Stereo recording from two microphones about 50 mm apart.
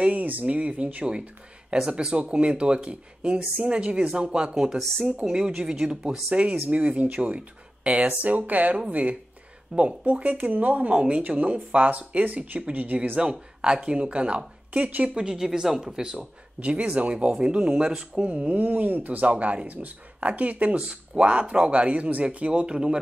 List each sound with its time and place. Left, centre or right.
0.0 s speech: right
13.2 s speech: centre
16.5 s speech: right
18.2 s speech: right